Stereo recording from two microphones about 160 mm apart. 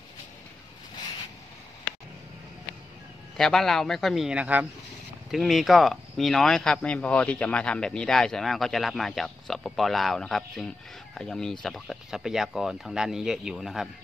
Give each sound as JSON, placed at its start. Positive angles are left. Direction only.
{"t": 3.3, "sound": "speech", "side_deg": 5}